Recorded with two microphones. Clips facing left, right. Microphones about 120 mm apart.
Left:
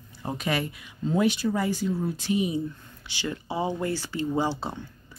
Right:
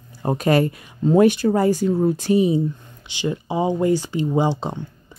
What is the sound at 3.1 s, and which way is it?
Speech, 20° right (ahead or behind).